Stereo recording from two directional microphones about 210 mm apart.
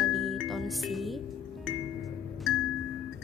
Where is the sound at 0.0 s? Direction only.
Centre (ahead or behind).